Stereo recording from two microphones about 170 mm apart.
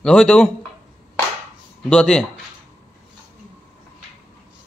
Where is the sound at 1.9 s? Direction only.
5° left (ahead or behind).